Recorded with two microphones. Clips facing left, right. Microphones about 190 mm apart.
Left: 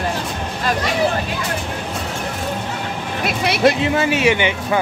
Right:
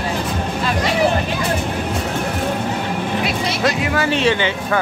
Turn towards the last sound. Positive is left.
turn(degrees=15)  # may be behind; listen again after turning